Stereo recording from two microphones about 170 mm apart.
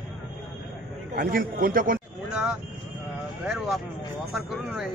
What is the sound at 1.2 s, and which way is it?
Speech, 60° right (ahead or behind).